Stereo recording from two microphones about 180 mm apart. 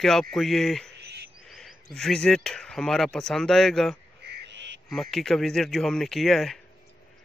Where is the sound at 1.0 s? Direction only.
65° right (ahead or behind).